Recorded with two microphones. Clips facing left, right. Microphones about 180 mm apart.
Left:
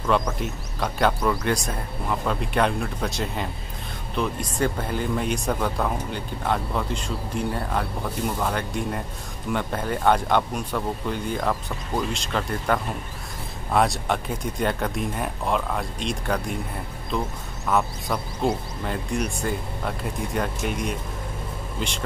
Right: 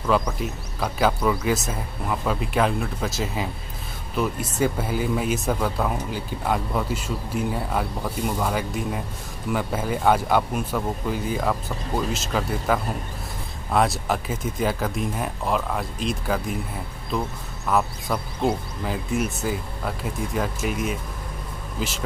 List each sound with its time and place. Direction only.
0.0 s speech: centre (ahead or behind)
17.6 s speech: centre (ahead or behind)